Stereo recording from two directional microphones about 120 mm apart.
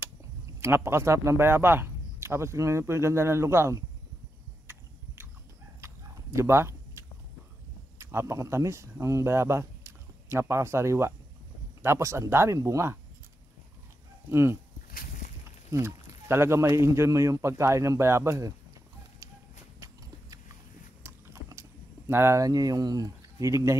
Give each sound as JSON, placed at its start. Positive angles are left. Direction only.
{"t": 0.6, "sound": "a man's voice", "side_deg": -20}
{"t": 4.6, "sound": "a sound", "side_deg": -20}
{"t": 5.8, "sound": "fowl", "side_deg": -25}
{"t": 8.0, "sound": "a man's voice", "side_deg": -25}
{"t": 14.3, "sound": "a man's voice", "side_deg": -20}
{"t": 15.7, "sound": "a man's voice", "side_deg": -20}
{"t": 21.0, "sound": "typing", "side_deg": -20}